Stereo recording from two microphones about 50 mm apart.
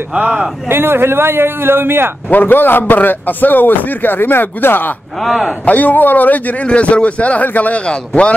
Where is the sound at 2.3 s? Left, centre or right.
Left.